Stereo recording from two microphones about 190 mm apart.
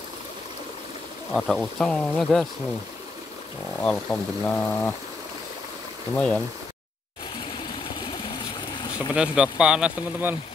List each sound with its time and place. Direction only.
1.3 s speech: centre (ahead or behind)
3.8 s speech: 5° left (ahead or behind)
6.1 s speech: 5° left (ahead or behind)
8.7 s boat: 20° left (ahead or behind)
9.1 s speech: 5° right (ahead or behind)